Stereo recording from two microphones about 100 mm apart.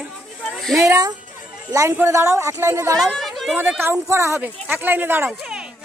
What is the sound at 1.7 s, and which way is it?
Speech, 30° right (ahead or behind).